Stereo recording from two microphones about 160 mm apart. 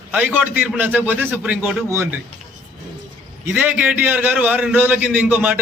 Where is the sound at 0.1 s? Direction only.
10° right (ahead or behind).